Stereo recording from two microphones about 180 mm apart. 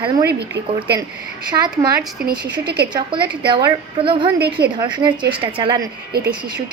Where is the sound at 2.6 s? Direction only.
65° right (ahead or behind).